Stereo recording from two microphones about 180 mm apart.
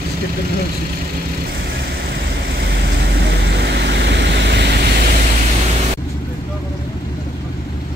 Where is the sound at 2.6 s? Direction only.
70° right (ahead or behind).